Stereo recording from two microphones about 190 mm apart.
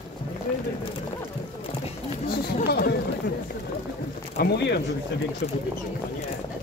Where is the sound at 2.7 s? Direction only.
55° left (ahead or behind).